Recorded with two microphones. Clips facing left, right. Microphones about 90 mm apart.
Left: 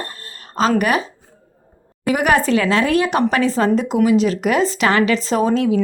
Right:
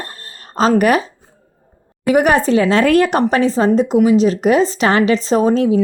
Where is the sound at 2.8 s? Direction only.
50° right (ahead or behind).